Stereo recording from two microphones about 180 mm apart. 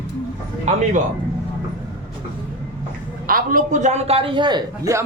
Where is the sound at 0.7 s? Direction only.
40° right (ahead or behind).